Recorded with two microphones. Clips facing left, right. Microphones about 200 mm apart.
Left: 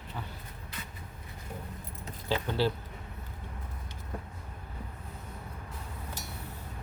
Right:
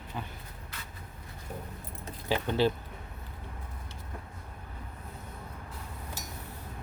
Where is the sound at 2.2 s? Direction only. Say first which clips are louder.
Right 2 dB; 15° right (ahead or behind).